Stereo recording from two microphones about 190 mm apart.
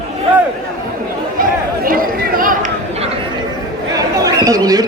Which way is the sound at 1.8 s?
50° right (ahead or behind).